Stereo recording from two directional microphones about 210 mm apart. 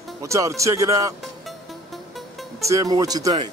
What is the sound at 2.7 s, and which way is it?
Speech, 15° right (ahead or behind).